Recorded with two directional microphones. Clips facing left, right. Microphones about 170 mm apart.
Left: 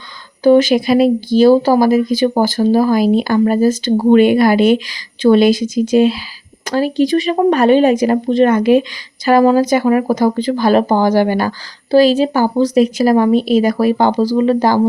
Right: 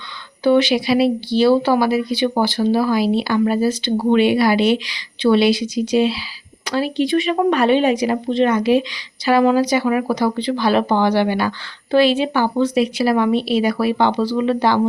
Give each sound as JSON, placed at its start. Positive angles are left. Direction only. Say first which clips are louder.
{"t": 0.4, "sound": "speech", "louder": "left 5 dB", "side_deg": 45}